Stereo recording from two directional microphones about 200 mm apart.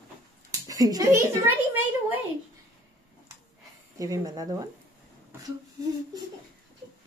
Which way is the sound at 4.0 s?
15° right (ahead or behind).